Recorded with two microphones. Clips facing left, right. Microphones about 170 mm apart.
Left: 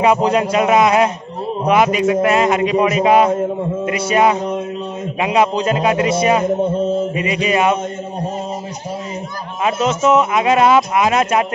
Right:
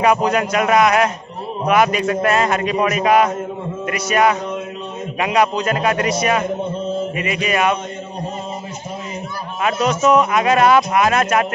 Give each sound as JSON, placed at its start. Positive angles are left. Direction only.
{"t": 0.0, "sound": "a man's voice", "side_deg": 25}
{"t": 9.7, "sound": "a man's voice", "side_deg": 25}